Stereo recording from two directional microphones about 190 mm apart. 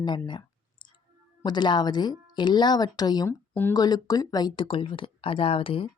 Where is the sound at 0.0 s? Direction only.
25° left (ahead or behind).